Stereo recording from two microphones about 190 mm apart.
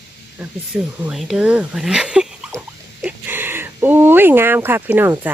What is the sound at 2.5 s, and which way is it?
Rodents, 5° right (ahead or behind).